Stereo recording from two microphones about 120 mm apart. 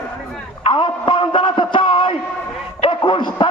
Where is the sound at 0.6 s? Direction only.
45° left (ahead or behind).